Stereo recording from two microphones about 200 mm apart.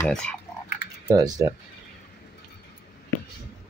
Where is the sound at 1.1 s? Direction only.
20° right (ahead or behind).